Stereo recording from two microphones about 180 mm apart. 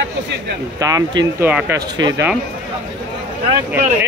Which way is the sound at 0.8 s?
20° right (ahead or behind).